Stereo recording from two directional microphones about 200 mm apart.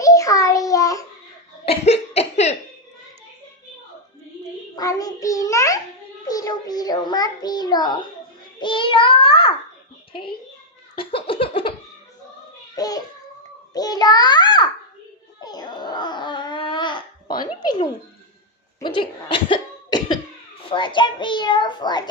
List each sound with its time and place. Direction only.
0.0 s child singing: 15° left (ahead or behind)
1.6 s cough: 30° left (ahead or behind)
4.8 s child singing: 15° left (ahead or behind)
10.9 s a sound: 25° left (ahead or behind)
12.7 s babbling: 20° left (ahead or behind)
13.7 s a sound: 20° left (ahead or behind)
15.4 s babbling: 20° left (ahead or behind)
18.8 s cough: 25° left (ahead or behind)
20.7 s a sound: 25° left (ahead or behind)